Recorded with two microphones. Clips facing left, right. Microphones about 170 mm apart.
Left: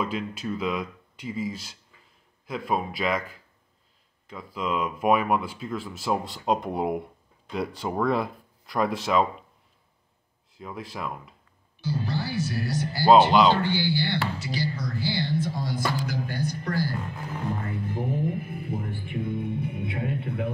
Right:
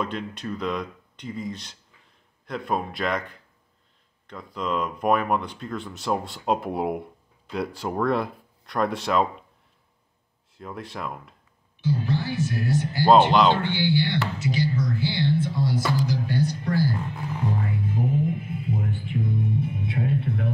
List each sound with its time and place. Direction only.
0.0 s speech: 5° left (ahead or behind)
10.5 s speech: centre (ahead or behind)
11.8 s speech: 35° left (ahead or behind)
13.3 s speech: centre (ahead or behind)
13.6 s speech: 40° left (ahead or behind)
15.8 s a sound: 50° left (ahead or behind)
17.6 s music: 55° left (ahead or behind)